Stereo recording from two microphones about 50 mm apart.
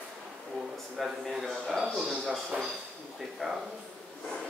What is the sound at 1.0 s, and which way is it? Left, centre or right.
Speech, centre.